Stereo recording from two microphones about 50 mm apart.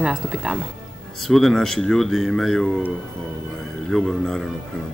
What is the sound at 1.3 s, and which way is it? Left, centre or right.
Speech, centre.